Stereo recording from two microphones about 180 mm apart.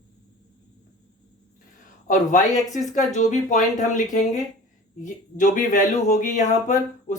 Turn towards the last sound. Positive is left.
turn(degrees=40)  # may be behind; listen again after turning